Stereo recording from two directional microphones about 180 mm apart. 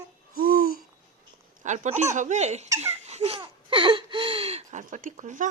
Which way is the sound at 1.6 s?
40° right (ahead or behind).